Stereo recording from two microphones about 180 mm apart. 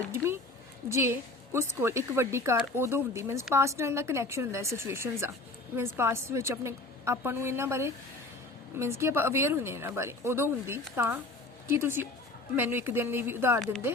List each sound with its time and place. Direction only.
0.1 s speech: 15° right (ahead or behind)